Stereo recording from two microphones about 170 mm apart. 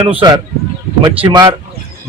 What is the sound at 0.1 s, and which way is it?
A man's voice, 25° right (ahead or behind).